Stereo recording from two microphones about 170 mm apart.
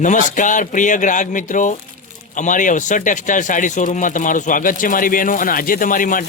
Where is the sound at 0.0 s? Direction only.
45° left (ahead or behind).